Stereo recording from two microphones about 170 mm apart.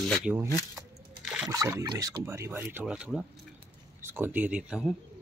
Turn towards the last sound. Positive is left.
turn(degrees=-5)  # may be behind; listen again after turning